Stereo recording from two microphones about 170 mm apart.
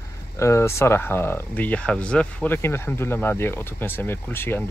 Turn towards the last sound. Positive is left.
turn(degrees=15)  # may be behind; listen again after turning